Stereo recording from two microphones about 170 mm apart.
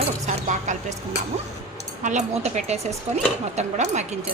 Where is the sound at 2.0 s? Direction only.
45° right (ahead or behind).